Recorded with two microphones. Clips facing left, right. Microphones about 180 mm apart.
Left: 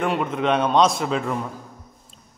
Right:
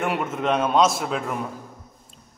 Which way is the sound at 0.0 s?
5° right (ahead or behind).